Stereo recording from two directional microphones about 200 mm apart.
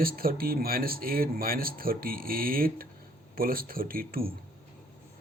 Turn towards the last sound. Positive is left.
turn(degrees=-45)  # may be behind; listen again after turning